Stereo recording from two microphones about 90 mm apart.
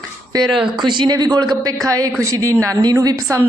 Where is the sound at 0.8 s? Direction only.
55° right (ahead or behind); by 3.4 s 40° right (ahead or behind).